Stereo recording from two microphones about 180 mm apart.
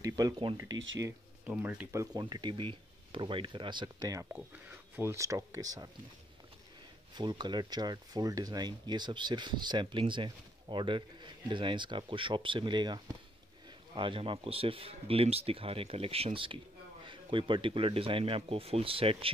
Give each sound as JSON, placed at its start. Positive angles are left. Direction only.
{"t": 0.0, "sound": "speech", "side_deg": -20}
{"t": 0.7, "sound": "speech", "side_deg": -90}
{"t": 1.5, "sound": "speech", "side_deg": -5}
{"t": 7.2, "sound": "speech", "side_deg": -25}